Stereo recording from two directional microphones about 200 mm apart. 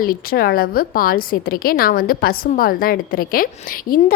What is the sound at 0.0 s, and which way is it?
A woman's voice, 45° left (ahead or behind).